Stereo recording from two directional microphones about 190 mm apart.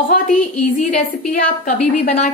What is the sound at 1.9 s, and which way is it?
Speech, 40° left (ahead or behind).